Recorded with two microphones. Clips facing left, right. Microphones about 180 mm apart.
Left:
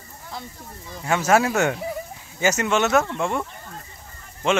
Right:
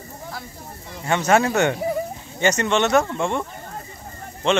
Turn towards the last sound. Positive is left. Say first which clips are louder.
# right 1 dB
turn(degrees=5)  # may be behind; listen again after turning